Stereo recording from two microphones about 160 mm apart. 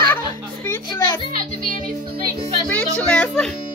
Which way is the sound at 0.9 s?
25° left (ahead or behind).